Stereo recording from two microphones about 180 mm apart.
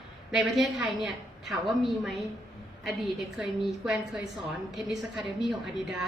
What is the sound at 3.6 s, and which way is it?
Speech, centre (ahead or behind).